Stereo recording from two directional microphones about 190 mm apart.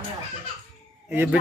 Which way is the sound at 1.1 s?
10° right (ahead or behind).